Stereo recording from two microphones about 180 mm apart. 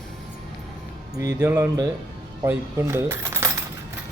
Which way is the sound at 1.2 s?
15° right (ahead or behind).